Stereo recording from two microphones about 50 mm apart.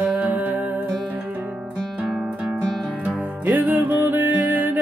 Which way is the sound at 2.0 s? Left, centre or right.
Centre.